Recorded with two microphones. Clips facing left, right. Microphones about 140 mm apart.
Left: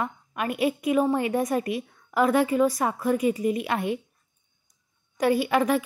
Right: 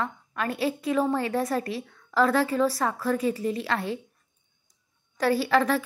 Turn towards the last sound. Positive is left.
turn(degrees=15)  # may be behind; listen again after turning